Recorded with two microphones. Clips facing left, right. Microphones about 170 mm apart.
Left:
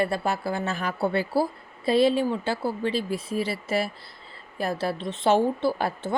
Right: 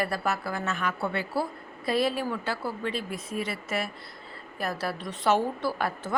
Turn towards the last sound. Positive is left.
turn(degrees=30)  # may be behind; listen again after turning